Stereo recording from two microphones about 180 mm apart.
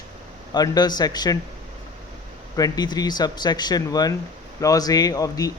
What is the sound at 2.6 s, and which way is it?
Speech, 20° left (ahead or behind).